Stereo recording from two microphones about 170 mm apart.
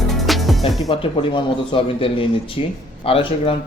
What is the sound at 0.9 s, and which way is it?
Speech, 30° left (ahead or behind).